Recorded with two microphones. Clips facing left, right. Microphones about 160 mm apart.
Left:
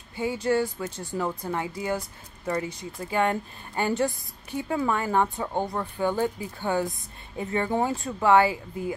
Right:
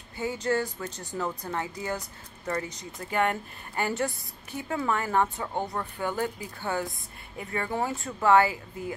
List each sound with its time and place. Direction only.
0.1 s speech: 15° left (ahead or behind)